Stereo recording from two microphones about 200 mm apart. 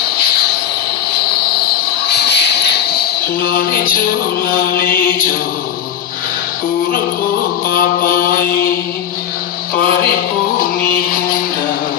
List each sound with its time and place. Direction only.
2.0 s a sound: 55° left (ahead or behind)
4.4 s chant: 45° left (ahead or behind)
7.7 s chant: 45° left (ahead or behind)